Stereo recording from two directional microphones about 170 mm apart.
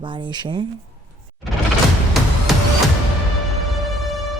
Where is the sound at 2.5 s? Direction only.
Centre (ahead or behind).